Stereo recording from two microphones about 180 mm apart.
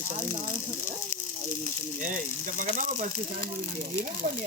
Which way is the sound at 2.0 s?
45° right (ahead or behind).